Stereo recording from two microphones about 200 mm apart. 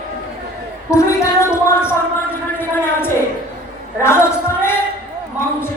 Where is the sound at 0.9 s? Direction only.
15° left (ahead or behind).